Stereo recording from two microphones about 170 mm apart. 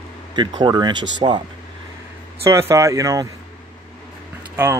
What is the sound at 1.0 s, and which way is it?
Speech, 90° right.